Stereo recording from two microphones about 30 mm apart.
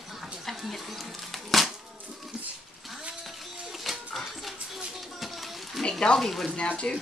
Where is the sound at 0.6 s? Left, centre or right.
Centre.